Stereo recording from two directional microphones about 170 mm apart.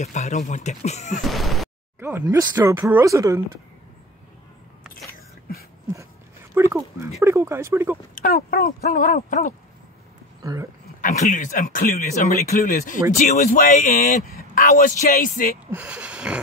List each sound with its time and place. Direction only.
0.0 s speech: 45° left (ahead or behind)
1.2 s speech: centre (ahead or behind)
2.0 s a sound: 10° right (ahead or behind)
2.2 s speech: 20° right (ahead or behind)
6.5 s a sound: 15° right (ahead or behind)
7.2 s speech: 15° right (ahead or behind)
8.1 s speech: 55° left (ahead or behind)
10.4 s speech: 20° right (ahead or behind)
11.0 s speech: 50° left (ahead or behind)
15.7 s speech: 5° right (ahead or behind)